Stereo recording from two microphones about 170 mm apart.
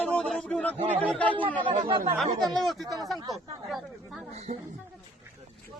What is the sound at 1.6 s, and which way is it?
Speech, 30° right (ahead or behind).